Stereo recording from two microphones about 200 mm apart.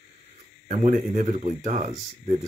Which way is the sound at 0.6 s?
35° right (ahead or behind).